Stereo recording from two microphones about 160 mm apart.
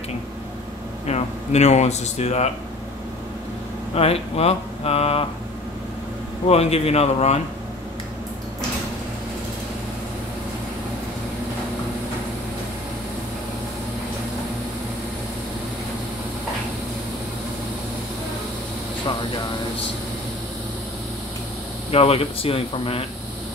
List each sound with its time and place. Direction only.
1.0 s speech: 45° left (ahead or behind)
3.9 s speech: 40° left (ahead or behind)
6.5 s speech: 40° left (ahead or behind)
21.9 s speech: 40° left (ahead or behind)